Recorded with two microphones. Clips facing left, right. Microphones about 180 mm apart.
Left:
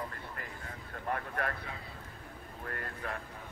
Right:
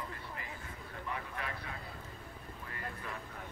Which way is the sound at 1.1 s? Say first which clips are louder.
Left 7 dB; 55° left (ahead or behind).